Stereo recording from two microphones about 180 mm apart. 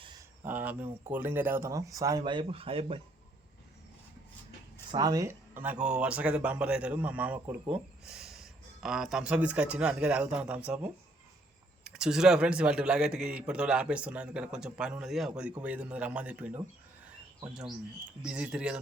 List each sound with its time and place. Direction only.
0.4 s a man's voice: 10° right (ahead or behind); by 3.0 s 30° right (ahead or behind)
4.9 s a man's voice: 20° right (ahead or behind)
18.2 s a man's voice: 5° right (ahead or behind)